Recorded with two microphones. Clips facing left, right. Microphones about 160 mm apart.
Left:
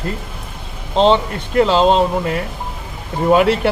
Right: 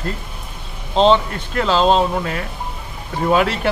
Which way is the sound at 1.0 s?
20° left (ahead or behind).